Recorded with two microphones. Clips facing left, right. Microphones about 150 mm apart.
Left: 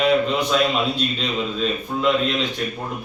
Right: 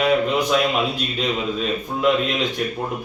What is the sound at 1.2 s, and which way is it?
Speech, 10° right (ahead or behind).